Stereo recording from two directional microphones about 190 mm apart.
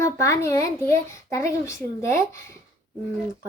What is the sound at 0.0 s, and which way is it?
A child's voice, 15° left (ahead or behind).